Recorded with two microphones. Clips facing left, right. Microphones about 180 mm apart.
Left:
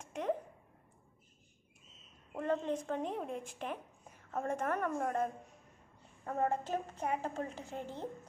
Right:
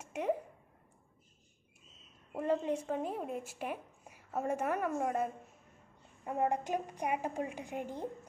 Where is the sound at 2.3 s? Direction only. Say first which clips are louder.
Right 2 dB; 10° right (ahead or behind).